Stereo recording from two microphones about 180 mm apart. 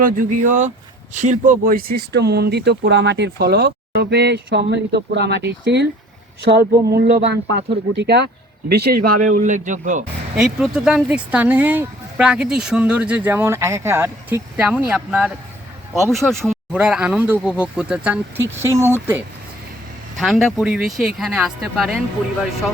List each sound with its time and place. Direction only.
0.0 s speech: 50° right (ahead or behind)
10.3 s speech: 5° right (ahead or behind)
16.5 s speech: 5° right (ahead or behind)
20.1 s speech: centre (ahead or behind)